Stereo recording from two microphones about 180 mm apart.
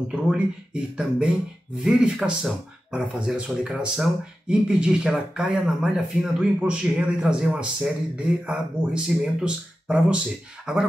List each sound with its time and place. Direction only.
0.1 s speech: 5° right (ahead or behind)